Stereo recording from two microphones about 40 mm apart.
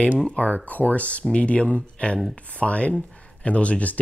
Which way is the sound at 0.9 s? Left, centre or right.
Left.